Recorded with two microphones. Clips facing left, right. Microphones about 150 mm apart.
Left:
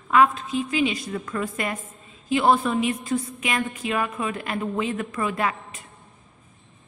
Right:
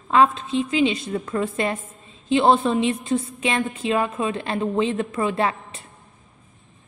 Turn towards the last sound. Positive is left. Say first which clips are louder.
# right 3 dB
turn(degrees=-30)  # may be behind; listen again after turning